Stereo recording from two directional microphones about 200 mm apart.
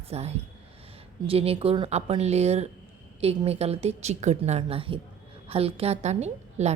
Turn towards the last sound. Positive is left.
turn(degrees=-35)  # may be behind; listen again after turning